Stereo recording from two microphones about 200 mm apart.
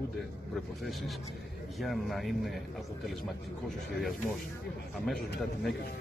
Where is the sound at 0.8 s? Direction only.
Centre (ahead or behind).